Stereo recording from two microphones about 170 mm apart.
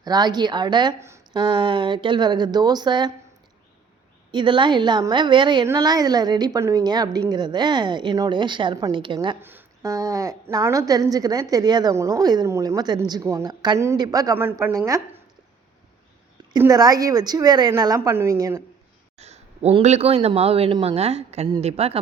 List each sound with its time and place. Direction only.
0.0 s a woman's voice: 25° right (ahead or behind)
4.3 s a woman's voice: 30° right (ahead or behind)
9.4 s a woman's voice: 10° right (ahead or behind)
16.6 s a woman's voice: 20° right (ahead or behind)
19.1 s a man's voice: 40° right (ahead or behind)